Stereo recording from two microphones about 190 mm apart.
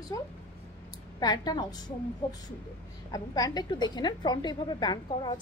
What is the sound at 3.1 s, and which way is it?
Speech, 20° left (ahead or behind).